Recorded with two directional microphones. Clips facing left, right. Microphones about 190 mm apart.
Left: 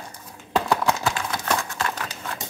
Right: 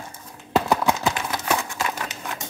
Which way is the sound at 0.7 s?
20° right (ahead or behind).